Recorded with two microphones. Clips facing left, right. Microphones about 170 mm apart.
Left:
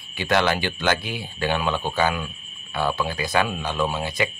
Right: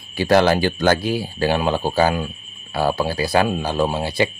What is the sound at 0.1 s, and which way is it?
Speech, 35° right (ahead or behind).